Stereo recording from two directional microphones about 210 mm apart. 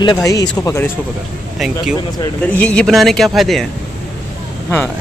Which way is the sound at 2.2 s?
10° left (ahead or behind).